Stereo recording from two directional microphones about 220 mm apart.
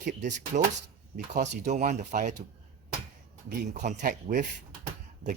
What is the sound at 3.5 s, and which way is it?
Speech, 35° right (ahead or behind).